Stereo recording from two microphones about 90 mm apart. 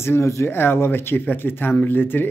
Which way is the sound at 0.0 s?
30° left (ahead or behind).